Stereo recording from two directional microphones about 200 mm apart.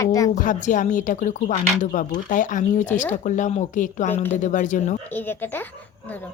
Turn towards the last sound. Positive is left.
turn(degrees=10)  # may be behind; listen again after turning